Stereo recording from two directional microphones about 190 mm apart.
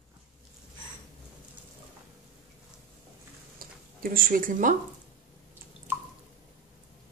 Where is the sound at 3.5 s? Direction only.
50° right (ahead or behind).